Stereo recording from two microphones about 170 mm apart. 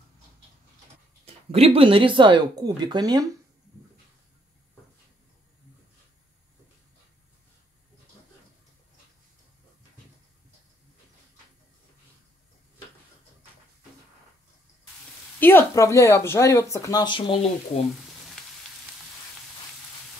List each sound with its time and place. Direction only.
1.2 s speech: 35° right (ahead or behind)
15.4 s speech: 15° left (ahead or behind); by 17.5 s 30° left (ahead or behind)
18.4 s frying: 5° left (ahead or behind)